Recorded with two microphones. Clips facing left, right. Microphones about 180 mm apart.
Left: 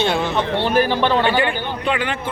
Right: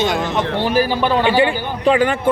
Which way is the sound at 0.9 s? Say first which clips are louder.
Right 1 dB; 5° right (ahead or behind).